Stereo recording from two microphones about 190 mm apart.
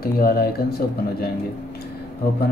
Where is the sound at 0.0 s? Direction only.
50° left (ahead or behind).